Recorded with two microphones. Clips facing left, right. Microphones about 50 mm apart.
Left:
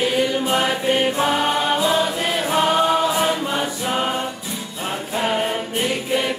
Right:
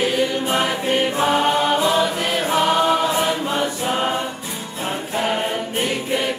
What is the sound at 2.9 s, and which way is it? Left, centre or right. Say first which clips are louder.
Choir: even; right.